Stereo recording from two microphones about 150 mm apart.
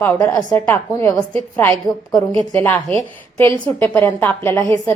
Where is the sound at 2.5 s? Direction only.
10° left (ahead or behind).